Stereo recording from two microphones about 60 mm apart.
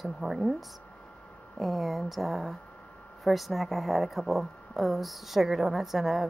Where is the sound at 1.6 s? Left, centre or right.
Centre.